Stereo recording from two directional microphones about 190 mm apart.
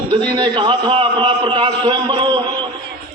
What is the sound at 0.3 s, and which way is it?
A man's voice, 25° right (ahead or behind).